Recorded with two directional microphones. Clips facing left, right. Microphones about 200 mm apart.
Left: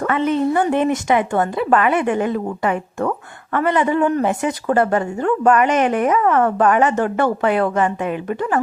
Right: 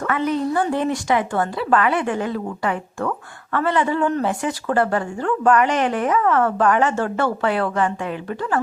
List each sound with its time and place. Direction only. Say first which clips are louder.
0.1 s speech: left 3 dB; 25° left (ahead or behind)